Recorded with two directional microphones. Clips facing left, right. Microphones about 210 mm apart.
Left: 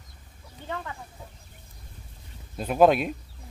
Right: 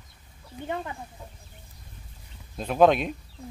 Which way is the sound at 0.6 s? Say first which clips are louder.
Right 4 dB; 15° right (ahead or behind).